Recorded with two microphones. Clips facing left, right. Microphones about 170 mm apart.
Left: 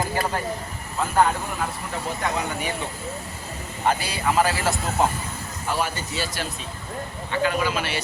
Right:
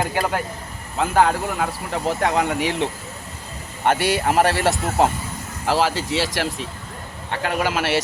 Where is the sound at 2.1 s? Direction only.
90° right.